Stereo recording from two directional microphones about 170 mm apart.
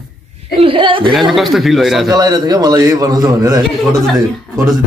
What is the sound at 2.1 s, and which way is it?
A man's voice, 25° right (ahead or behind).